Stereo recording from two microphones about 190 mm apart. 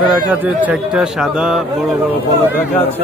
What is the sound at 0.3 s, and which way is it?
Speech, 10° right (ahead or behind).